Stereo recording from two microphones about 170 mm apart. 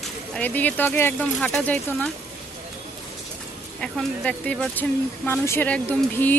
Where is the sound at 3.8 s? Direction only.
5° left (ahead or behind).